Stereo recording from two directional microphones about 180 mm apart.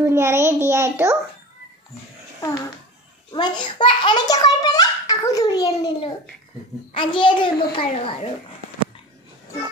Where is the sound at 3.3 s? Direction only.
25° left (ahead or behind).